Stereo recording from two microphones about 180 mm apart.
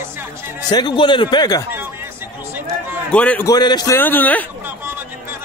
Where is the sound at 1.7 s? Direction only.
10° right (ahead or behind).